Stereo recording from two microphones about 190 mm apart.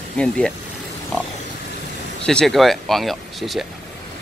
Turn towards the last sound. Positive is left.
turn(degrees=0)  # may be behind; listen again after turning